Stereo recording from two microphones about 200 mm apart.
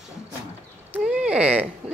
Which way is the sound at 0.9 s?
5° right (ahead or behind).